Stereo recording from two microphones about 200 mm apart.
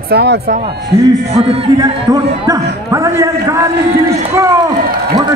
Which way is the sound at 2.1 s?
15° right (ahead or behind).